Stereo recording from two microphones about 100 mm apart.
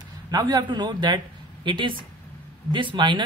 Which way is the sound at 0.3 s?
40° right (ahead or behind).